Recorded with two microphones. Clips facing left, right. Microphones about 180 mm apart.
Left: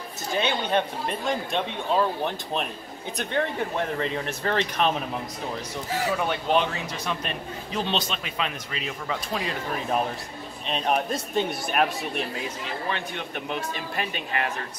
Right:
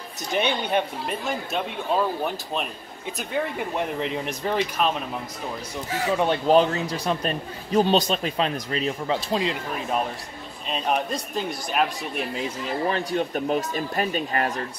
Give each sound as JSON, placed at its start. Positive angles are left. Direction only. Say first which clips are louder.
{"t": 0.3, "sound": "speech", "louder": "right 1 dB", "side_deg": -15}
{"t": 6.1, "sound": "a man's voice", "louder": "right 7 dB", "side_deg": -35}
{"t": 10.7, "sound": "speech", "louder": "even", "side_deg": 0}
{"t": 12.6, "sound": "a man's voice", "louder": "right 8 dB", "side_deg": -35}